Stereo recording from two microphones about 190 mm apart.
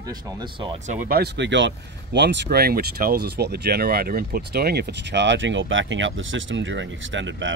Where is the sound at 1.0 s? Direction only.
55° right (ahead or behind).